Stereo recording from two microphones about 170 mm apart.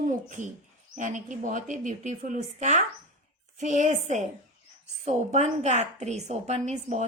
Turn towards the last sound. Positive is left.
turn(degrees=-40)  # may be behind; listen again after turning